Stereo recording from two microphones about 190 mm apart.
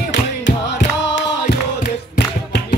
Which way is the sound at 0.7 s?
65° left (ahead or behind).